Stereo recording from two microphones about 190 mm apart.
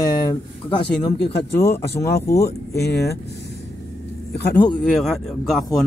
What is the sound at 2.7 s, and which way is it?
Speech, 60° left (ahead or behind).